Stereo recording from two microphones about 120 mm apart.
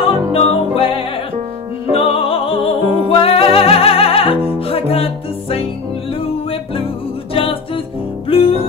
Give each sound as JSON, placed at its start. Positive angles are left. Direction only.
{"t": 0.0, "sound": "music", "side_deg": 50}